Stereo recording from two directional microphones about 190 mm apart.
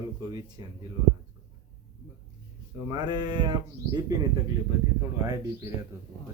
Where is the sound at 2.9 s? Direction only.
20° right (ahead or behind).